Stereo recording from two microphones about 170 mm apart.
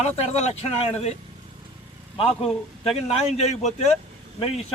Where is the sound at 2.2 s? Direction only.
Centre (ahead or behind).